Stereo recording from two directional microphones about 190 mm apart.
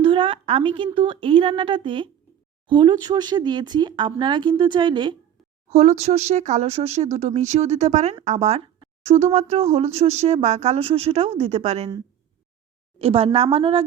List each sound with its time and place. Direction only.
0.0 s a sound: 25° right (ahead or behind)
0.9 s speech: 25° right (ahead or behind)
5.7 s speech: 35° right (ahead or behind)
13.0 s speech: 30° right (ahead or behind)